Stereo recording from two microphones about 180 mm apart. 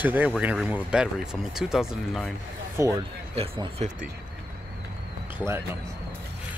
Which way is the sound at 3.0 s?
30° right (ahead or behind).